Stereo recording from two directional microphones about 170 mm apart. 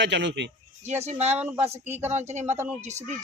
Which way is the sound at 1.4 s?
10° right (ahead or behind).